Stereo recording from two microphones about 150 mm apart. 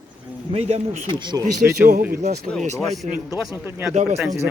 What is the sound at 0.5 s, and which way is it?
Speech, 45° right (ahead or behind).